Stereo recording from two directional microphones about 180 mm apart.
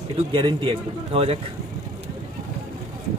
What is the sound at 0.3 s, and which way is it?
Speech, 25° right (ahead or behind).